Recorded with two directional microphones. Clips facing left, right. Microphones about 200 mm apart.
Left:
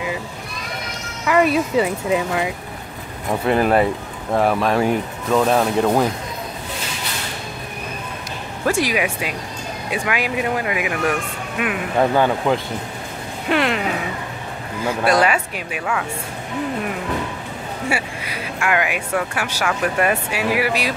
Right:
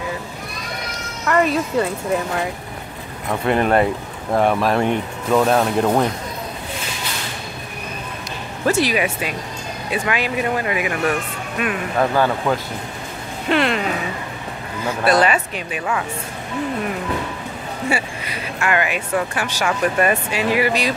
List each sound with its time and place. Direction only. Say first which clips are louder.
1.2 s speech: left 1 dB; 10° left (ahead or behind)
8.6 s speech: right 1 dB; 10° left (ahead or behind)
11.6 s speech: left 1 dB; 20° left (ahead or behind)
13.5 s music: right 1 dB; 10° left (ahead or behind)
14.9 s speech: even; 10° left (ahead or behind)
17.8 s speech: right 2 dB; 10° left (ahead or behind)